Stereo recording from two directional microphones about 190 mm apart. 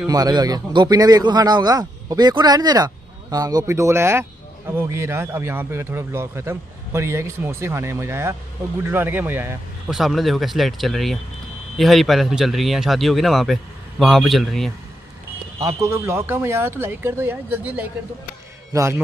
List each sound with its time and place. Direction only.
0.0 s speech: 20° right (ahead or behind)
9.9 s speech: centre (ahead or behind)
15.6 s a man's voice: 15° right (ahead or behind)